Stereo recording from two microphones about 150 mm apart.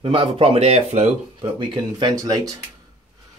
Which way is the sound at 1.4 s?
30° right (ahead or behind).